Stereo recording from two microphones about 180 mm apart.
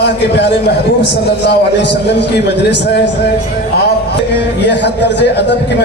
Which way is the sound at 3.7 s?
65° left (ahead or behind).